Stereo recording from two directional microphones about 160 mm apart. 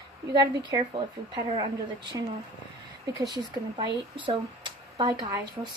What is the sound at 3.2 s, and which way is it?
A woman's voice, 25° right (ahead or behind).